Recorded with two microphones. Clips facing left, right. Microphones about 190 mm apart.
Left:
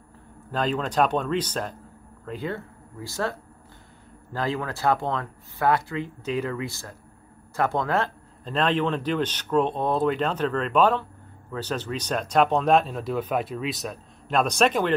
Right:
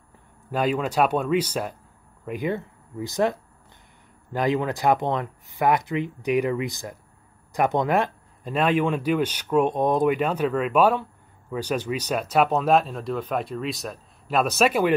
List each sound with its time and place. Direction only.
0.5 s speech: 10° right (ahead or behind)